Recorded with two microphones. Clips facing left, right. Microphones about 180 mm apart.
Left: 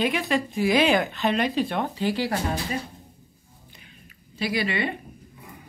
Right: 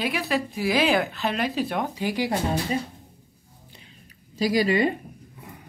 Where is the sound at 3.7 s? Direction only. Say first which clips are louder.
Right 1 dB; 35° right (ahead or behind).